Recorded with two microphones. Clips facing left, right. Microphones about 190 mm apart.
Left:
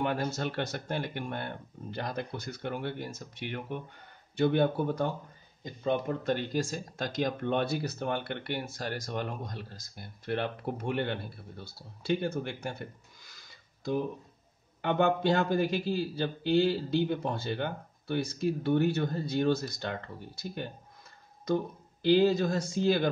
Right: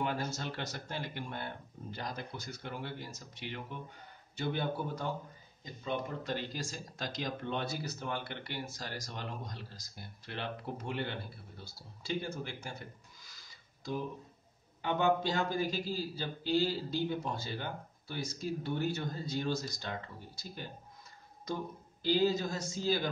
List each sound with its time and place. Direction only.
0.0 s a man's voice: 60° left (ahead or behind)
14.8 s a man's voice: 60° left (ahead or behind)
22.0 s a man's voice: 60° left (ahead or behind)